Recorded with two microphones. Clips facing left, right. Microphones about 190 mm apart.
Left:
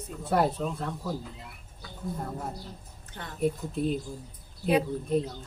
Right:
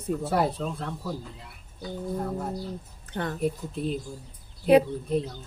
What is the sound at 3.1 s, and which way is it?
Speech, 65° right (ahead or behind).